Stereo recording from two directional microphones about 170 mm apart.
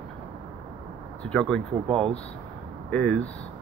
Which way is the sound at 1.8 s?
35° right (ahead or behind).